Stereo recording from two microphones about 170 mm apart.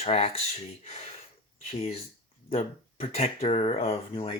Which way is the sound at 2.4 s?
40° left (ahead or behind).